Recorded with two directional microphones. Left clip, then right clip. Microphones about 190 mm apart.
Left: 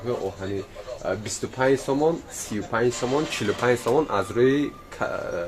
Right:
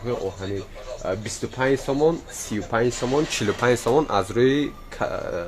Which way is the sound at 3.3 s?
50° right (ahead or behind).